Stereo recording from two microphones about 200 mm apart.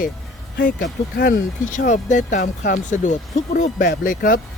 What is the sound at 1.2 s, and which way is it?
Speech, 50° left (ahead or behind).